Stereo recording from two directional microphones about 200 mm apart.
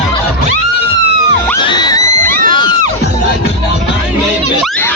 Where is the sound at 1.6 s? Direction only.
20° left (ahead or behind).